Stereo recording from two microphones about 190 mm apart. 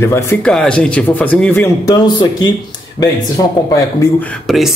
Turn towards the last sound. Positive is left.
turn(degrees=0)  # may be behind; listen again after turning